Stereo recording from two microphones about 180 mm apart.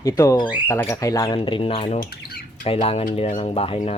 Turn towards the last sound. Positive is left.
turn(degrees=35)  # may be behind; listen again after turning